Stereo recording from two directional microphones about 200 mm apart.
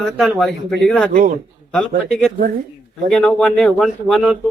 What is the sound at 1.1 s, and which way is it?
Speech, 45° right (ahead or behind).